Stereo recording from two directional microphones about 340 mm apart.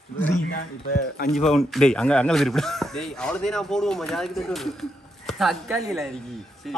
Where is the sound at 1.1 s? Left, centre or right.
Left.